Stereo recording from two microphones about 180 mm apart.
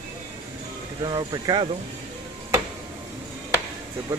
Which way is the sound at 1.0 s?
25° right (ahead or behind).